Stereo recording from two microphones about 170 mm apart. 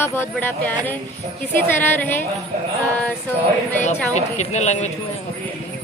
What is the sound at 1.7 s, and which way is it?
Speech, 10° left (ahead or behind).